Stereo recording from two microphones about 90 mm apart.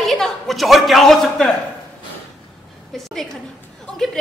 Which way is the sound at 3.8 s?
5° left (ahead or behind).